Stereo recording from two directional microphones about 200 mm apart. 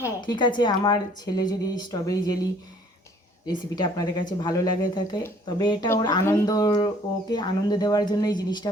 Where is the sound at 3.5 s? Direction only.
20° left (ahead or behind).